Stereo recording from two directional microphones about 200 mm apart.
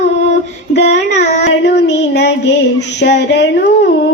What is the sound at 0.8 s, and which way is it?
Child singing, 35° left (ahead or behind).